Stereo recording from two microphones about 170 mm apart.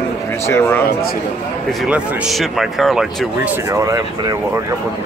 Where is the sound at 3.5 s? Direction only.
20° right (ahead or behind).